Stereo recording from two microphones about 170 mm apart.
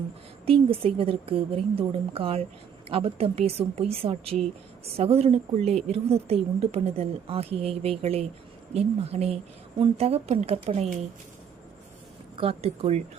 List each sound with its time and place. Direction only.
0.4 s speech: 35° right (ahead or behind)
12.4 s speech: 35° right (ahead or behind)